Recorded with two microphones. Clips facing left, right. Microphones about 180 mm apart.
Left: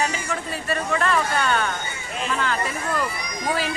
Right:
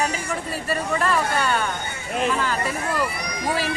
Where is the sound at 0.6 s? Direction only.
5° right (ahead or behind).